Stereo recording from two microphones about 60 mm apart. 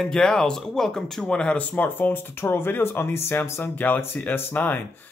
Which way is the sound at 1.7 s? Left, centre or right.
Left.